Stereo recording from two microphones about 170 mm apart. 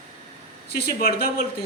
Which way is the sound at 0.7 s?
65° left (ahead or behind).